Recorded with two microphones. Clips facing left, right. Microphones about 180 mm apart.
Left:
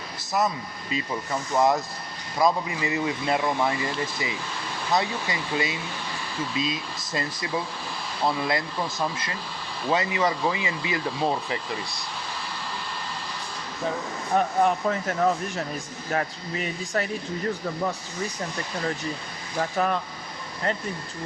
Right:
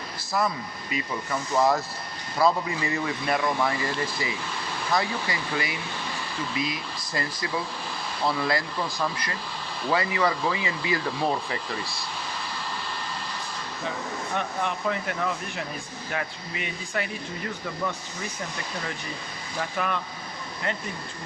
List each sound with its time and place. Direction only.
0.3 s speech: 25° left (ahead or behind)
4.9 s speech: 25° left (ahead or behind)
14.3 s speech: 40° left (ahead or behind)
19.5 s speech: 35° left (ahead or behind)